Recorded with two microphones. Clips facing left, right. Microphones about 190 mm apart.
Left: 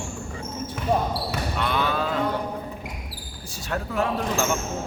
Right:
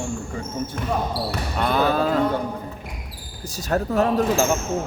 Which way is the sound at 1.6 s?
40° right (ahead or behind).